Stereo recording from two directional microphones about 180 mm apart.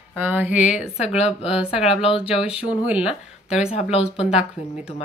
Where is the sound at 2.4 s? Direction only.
5° right (ahead or behind).